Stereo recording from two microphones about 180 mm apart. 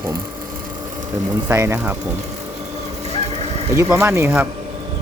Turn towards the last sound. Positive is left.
turn(degrees=-15)  # may be behind; listen again after turning